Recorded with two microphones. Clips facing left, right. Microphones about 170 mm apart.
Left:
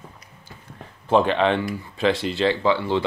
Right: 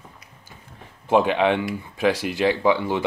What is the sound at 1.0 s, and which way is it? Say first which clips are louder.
Speech: even; 10° right (ahead or behind).